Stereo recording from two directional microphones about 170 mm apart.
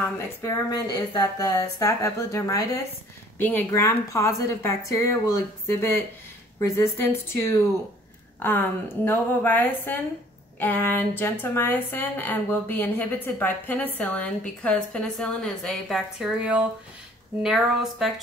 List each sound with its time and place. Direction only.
0.0 s a woman's voice: 15° left (ahead or behind); by 18.1 s centre (ahead or behind)